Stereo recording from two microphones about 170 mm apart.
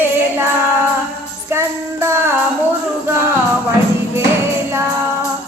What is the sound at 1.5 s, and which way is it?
Music, 15° right (ahead or behind).